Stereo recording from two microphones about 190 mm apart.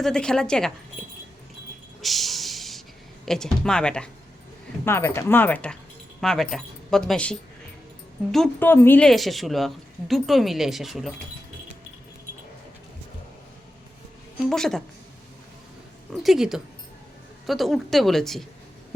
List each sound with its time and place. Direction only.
0.0 s a woman's voice: 5° left (ahead or behind)
2.0 s a sound: centre (ahead or behind)
3.2 s a woman's voice: 5° left (ahead or behind)
14.5 s a woman's voice: centre (ahead or behind)
16.1 s a woman's voice: centre (ahead or behind)